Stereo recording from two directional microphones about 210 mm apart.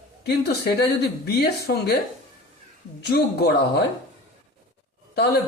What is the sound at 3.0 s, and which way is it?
Speech, 50° left (ahead or behind).